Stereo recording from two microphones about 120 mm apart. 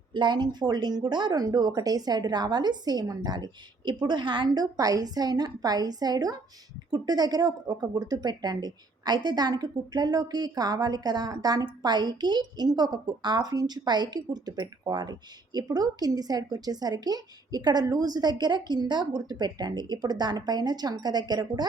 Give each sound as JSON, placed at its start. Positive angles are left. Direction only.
{"t": 0.1, "sound": "a woman's voice", "side_deg": -40}